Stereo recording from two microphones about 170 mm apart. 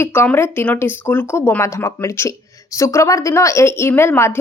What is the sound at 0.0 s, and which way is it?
A woman's voice, 15° left (ahead or behind).